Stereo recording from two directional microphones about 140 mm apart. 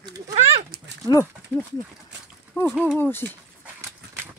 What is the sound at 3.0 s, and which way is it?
Speech, 15° left (ahead or behind).